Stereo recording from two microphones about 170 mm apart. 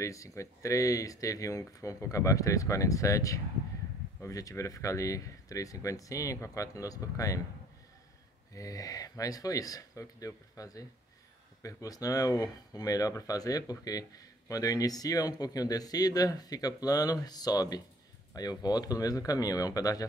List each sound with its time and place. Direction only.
0.0 s speech: 20° left (ahead or behind)
8.5 s speech: 20° left (ahead or behind)